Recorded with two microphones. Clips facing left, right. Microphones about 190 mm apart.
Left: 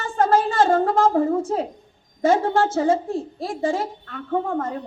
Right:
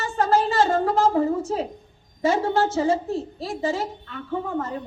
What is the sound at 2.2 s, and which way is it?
A woman's voice, 50° left (ahead or behind).